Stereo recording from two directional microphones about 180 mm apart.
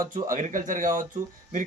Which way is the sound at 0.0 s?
50° right (ahead or behind).